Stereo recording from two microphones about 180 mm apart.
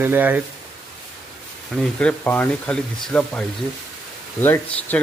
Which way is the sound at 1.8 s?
5° left (ahead or behind).